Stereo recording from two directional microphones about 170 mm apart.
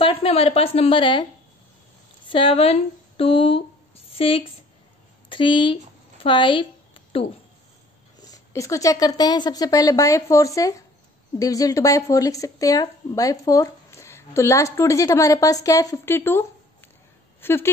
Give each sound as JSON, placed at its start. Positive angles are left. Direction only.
{"t": 0.0, "sound": "a woman's voice", "side_deg": 35}
{"t": 2.2, "sound": "a woman's voice", "side_deg": 30}
{"t": 8.2, "sound": "speech", "side_deg": 20}